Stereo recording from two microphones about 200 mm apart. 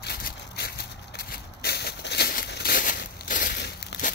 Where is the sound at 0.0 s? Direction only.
55° left (ahead or behind).